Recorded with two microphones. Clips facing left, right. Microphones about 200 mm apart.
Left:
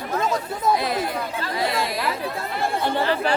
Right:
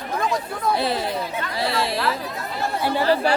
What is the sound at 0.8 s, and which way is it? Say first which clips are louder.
Chatter: right 1 dB; 30° right (ahead or behind).